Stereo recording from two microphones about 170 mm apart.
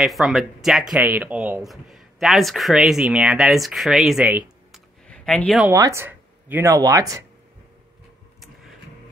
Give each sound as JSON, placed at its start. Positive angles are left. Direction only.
{"t": 0.0, "sound": "speech", "side_deg": 0}
{"t": 5.0, "sound": "a sound", "side_deg": 5}
{"t": 5.7, "sound": "speech", "side_deg": -15}